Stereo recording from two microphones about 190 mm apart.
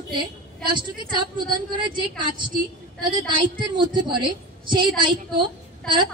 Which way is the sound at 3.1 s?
25° right (ahead or behind).